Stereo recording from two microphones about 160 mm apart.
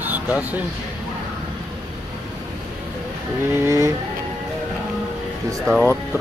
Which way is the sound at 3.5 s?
15° right (ahead or behind).